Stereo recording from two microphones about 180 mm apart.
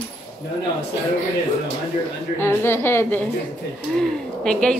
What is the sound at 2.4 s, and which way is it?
Speech, 15° left (ahead or behind).